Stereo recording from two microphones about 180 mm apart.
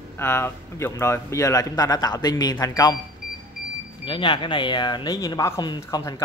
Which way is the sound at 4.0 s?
25° left (ahead or behind).